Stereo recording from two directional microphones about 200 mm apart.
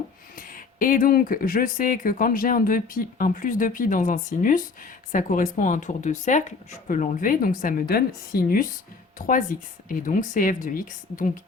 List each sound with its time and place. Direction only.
0.3 s speech: 45° left (ahead or behind)